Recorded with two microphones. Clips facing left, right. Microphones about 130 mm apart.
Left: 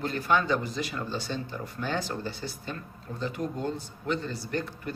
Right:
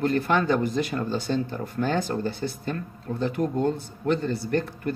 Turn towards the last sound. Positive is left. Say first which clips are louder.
# right 6 dB
turn(degrees=-55)  # may be behind; listen again after turning